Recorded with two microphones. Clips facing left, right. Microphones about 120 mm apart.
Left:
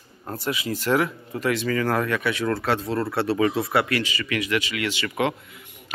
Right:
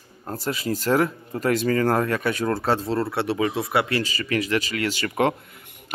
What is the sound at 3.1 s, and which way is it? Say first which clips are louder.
Speech: left 2 dB; 20° right (ahead or behind).